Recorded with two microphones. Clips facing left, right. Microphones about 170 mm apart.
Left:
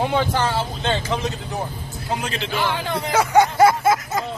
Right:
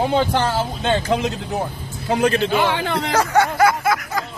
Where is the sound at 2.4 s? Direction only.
50° right (ahead or behind).